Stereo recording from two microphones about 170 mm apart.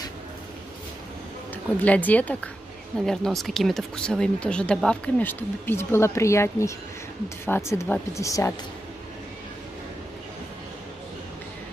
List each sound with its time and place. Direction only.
1.5 s speech: 10° left (ahead or behind)